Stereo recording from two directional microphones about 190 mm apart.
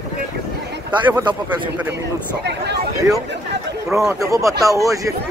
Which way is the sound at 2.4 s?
60° right (ahead or behind).